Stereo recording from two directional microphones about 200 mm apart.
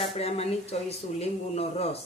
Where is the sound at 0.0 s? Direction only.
30° left (ahead or behind).